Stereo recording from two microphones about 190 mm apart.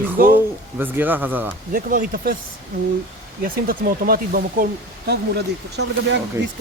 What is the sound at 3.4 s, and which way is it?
Speech, 50° right (ahead or behind).